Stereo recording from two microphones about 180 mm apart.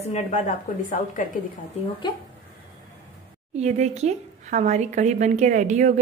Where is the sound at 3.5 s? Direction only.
40° right (ahead or behind).